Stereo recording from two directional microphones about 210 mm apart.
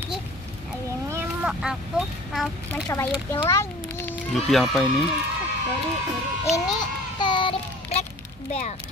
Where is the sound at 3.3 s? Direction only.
15° left (ahead or behind).